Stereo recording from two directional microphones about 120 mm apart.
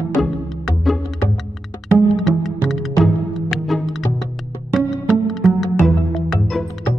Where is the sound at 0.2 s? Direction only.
Centre (ahead or behind).